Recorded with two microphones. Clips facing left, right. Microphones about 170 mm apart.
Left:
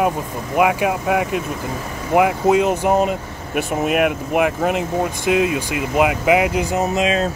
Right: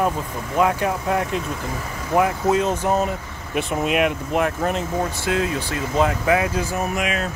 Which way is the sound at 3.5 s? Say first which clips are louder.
Left 2 dB; 5° left (ahead or behind).